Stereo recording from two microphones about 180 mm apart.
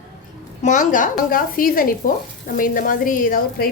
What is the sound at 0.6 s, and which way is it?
A woman's voice, 45° left (ahead or behind).